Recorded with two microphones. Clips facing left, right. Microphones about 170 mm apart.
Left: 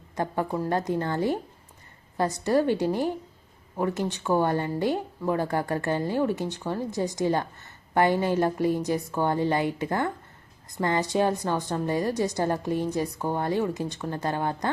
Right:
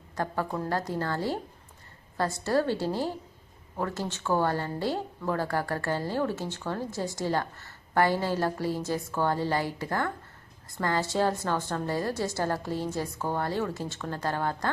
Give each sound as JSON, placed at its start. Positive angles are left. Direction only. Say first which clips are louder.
{"t": 0.2, "sound": "a woman's voice", "louder": "left 3 dB", "side_deg": 20}